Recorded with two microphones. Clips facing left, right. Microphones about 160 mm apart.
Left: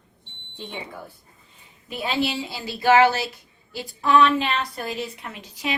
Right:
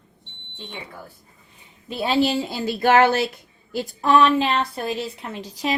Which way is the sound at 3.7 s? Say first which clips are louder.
Right 1 dB; 40° right (ahead or behind).